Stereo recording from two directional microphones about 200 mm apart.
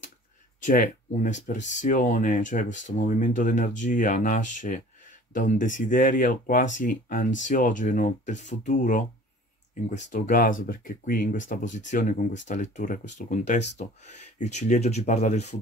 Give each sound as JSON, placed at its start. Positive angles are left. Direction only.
{"t": 0.7, "sound": "speech", "side_deg": 40}